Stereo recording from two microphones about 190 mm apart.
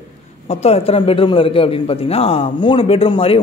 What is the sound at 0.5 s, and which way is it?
A man's voice, 35° left (ahead or behind).